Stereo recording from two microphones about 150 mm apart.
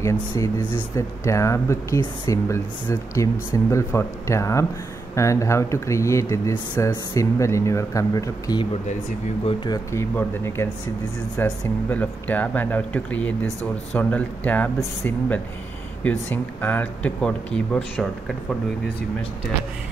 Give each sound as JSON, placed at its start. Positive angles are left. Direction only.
{"t": 0.4, "sound": "speech", "side_deg": 25}
{"t": 9.7, "sound": "speech", "side_deg": 15}